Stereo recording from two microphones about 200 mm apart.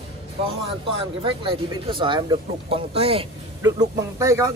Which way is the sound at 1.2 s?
25° right (ahead or behind).